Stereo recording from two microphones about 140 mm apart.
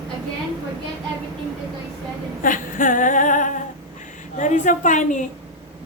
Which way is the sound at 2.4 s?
75° left (ahead or behind).